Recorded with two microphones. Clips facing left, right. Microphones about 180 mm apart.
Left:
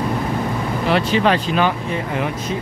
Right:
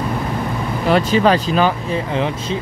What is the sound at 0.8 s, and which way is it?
Speech, 40° right (ahead or behind).